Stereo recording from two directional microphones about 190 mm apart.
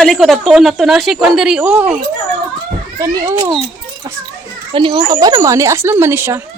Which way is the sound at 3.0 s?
15° right (ahead or behind).